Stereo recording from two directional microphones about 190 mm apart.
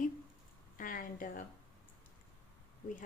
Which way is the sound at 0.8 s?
45° left (ahead or behind).